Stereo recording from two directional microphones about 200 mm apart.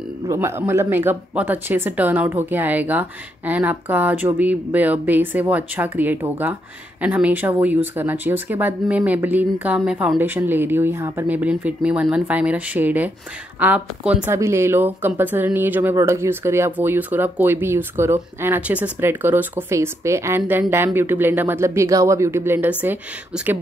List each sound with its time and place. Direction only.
0.3 s speech: 15° right (ahead or behind)